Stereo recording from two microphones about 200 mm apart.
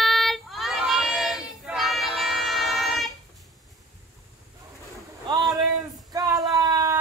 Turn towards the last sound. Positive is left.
turn(degrees=-15)  # may be behind; listen again after turning